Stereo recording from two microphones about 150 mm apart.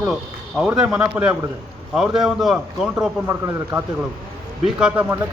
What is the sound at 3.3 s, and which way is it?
A man's voice, 15° right (ahead or behind).